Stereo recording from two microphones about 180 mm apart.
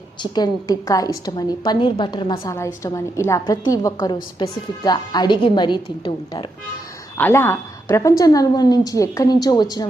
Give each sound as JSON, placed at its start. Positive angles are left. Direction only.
{"t": 0.2, "sound": "a woman's voice", "side_deg": 20}
{"t": 7.2, "sound": "a woman's voice", "side_deg": 10}